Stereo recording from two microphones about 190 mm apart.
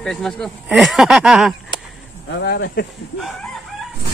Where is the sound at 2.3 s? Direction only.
65° left (ahead or behind).